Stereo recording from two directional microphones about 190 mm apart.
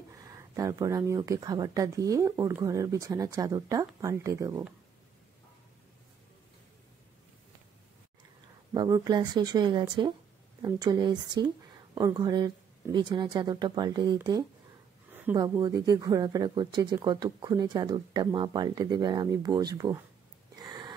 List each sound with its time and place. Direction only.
0.1 s speech: 15° right (ahead or behind)
8.7 s speech: 20° right (ahead or behind)
15.3 s speech: 20° right (ahead or behind)
20.5 s a sound: 20° right (ahead or behind)